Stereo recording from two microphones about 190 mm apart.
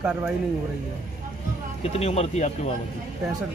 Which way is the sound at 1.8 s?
30° left (ahead or behind).